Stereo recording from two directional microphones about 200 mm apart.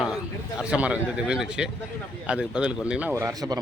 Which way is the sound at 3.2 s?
15° right (ahead or behind).